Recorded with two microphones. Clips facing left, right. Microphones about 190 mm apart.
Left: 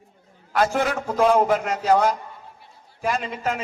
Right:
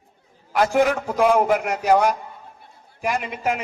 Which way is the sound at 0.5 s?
15° right (ahead or behind).